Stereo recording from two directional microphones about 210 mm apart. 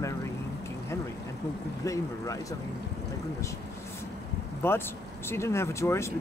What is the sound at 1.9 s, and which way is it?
Speech, 15° left (ahead or behind).